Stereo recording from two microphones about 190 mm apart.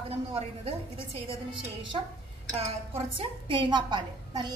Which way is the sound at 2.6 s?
30° right (ahead or behind).